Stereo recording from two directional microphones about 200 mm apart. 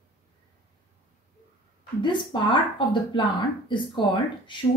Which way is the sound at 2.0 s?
25° left (ahead or behind).